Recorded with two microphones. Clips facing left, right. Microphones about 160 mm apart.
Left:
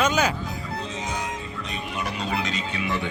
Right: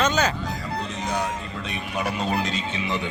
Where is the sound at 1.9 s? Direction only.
45° right (ahead or behind); by 3.0 s 25° right (ahead or behind).